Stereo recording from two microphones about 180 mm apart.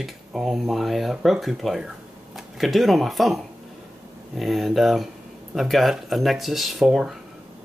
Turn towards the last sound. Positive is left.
turn(degrees=0)  # may be behind; listen again after turning